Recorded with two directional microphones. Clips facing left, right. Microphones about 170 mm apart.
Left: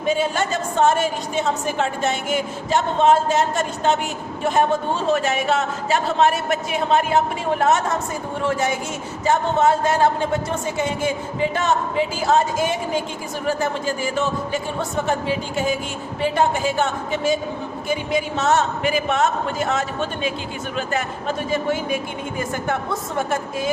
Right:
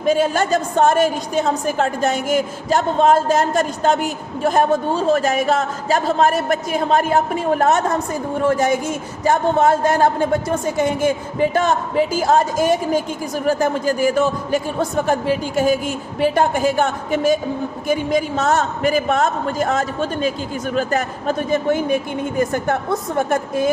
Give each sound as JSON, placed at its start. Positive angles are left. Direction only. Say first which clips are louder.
{"t": 0.0, "sound": "a woman's voice", "louder": "right 4 dB", "side_deg": -40}
{"t": 15.3, "sound": "a woman's voice", "louder": "right 5 dB", "side_deg": -45}